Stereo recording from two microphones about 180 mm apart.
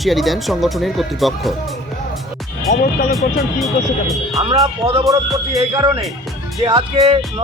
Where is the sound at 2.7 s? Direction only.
40° left (ahead or behind).